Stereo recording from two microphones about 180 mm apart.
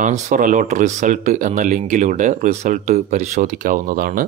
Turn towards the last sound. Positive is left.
turn(degrees=-50)  # may be behind; listen again after turning